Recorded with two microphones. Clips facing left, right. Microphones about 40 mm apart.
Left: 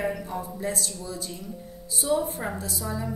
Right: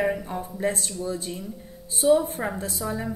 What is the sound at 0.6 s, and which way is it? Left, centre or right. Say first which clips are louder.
Speech: right 4 dB; right.